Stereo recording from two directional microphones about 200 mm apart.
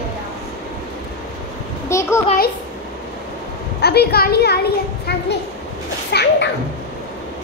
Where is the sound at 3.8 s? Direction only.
55° left (ahead or behind).